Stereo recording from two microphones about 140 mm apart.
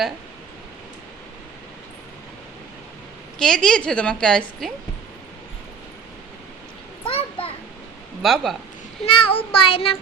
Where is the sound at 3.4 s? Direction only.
5° left (ahead or behind).